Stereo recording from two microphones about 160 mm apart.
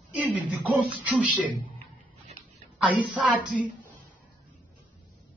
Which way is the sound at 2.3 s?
45° right (ahead or behind).